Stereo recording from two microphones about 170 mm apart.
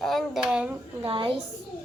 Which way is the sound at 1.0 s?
30° right (ahead or behind).